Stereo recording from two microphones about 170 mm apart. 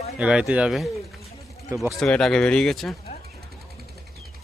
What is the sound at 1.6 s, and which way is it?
Speech, 15° right (ahead or behind).